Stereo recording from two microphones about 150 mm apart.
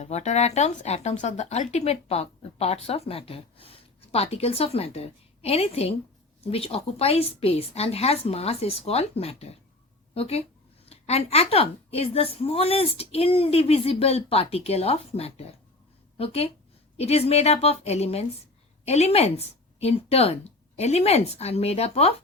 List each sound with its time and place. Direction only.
0.0 s a woman's voice: 50° left (ahead or behind)